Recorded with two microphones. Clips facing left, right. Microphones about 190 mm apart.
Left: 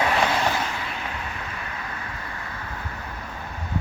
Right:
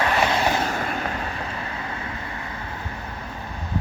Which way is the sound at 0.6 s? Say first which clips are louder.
Right 5 dB; 45° right (ahead or behind).